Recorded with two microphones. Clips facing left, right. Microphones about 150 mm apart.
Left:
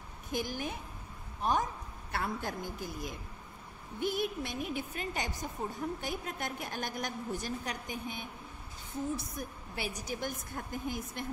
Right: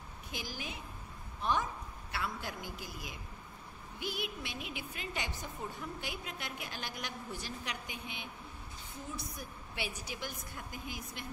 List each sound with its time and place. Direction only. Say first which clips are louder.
0.3 s a woman's voice: left 8 dB; 50° left (ahead or behind)